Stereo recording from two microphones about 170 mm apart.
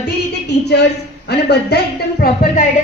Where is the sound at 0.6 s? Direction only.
80° left.